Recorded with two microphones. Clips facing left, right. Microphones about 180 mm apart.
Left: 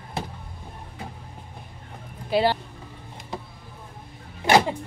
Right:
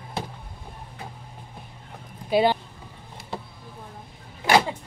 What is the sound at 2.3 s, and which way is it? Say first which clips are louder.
Speech: right 1 dB; 15° right (ahead or behind).